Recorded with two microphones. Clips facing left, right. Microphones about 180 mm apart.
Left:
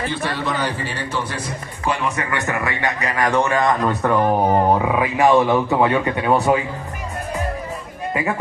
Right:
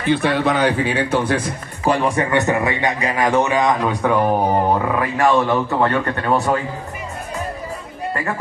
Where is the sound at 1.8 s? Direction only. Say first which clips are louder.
Right 5 dB; 35° right (ahead or behind); by 3.6 s 15° right (ahead or behind).